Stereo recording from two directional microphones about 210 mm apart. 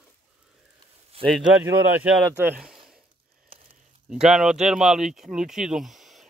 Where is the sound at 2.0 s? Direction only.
5° right (ahead or behind).